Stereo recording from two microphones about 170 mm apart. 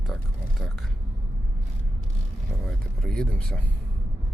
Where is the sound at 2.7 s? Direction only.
5° left (ahead or behind).